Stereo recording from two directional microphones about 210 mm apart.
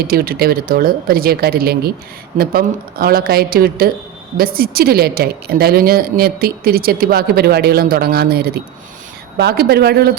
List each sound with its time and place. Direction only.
0.1 s speech: 45° right (ahead or behind)